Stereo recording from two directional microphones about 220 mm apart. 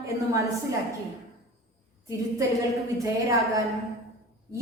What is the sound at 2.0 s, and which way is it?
Speech, 15° right (ahead or behind).